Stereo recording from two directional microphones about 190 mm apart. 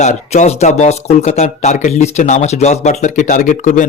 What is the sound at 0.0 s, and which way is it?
Speech, 35° left (ahead or behind).